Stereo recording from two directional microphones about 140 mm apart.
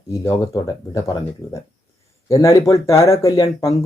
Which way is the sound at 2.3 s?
25° left (ahead or behind).